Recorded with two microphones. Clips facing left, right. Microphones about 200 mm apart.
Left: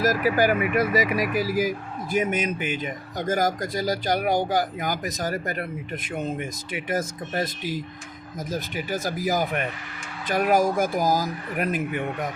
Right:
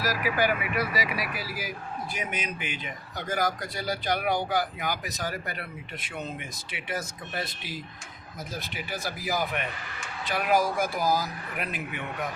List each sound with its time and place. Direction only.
0.0 s speech: 45° left (ahead or behind)